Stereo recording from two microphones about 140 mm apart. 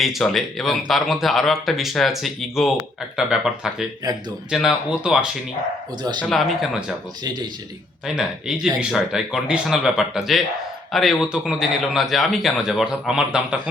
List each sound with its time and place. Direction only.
0.0 s speech: centre (ahead or behind)
8.0 s speech: 5° right (ahead or behind)